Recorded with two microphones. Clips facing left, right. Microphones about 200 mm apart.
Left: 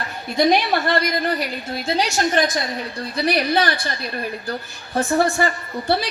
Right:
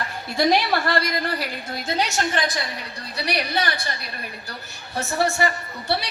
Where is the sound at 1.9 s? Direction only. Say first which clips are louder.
Left 4 dB; 35° left (ahead or behind).